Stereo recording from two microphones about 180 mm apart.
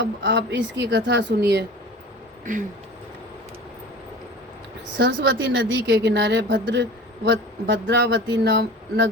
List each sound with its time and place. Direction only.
0.0 s speech: 75° right (ahead or behind)
4.9 s a woman's voice: 85° right